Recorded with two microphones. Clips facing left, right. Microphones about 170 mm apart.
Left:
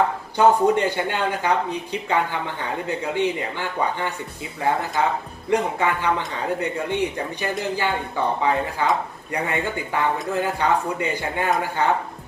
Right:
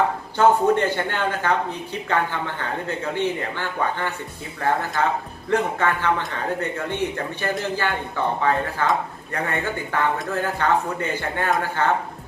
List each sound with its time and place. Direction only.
0.3 s speech: 15° left (ahead or behind)